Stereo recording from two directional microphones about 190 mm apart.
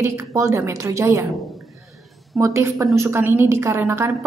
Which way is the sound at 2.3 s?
15° right (ahead or behind).